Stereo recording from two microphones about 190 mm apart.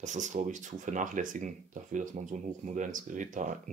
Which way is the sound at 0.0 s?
40° right (ahead or behind).